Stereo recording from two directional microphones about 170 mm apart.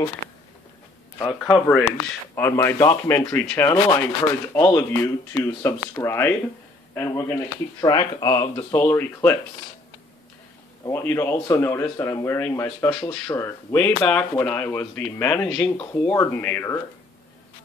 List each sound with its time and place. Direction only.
1.2 s speech: centre (ahead or behind)
2.3 s a man's voice: 15° left (ahead or behind)
7.8 s speech: 25° left (ahead or behind)
10.8 s a man's voice: 15° left (ahead or behind)